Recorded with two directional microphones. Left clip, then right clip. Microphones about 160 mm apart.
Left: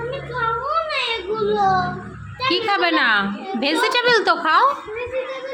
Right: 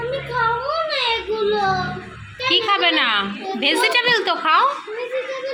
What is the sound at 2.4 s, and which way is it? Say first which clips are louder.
A woman's voice: right 1 dB; 30° left (ahead or behind).